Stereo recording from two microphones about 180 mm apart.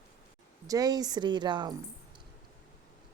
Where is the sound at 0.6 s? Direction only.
20° right (ahead or behind).